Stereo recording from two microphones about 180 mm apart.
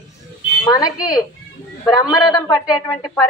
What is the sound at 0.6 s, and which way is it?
Speech, 20° left (ahead or behind).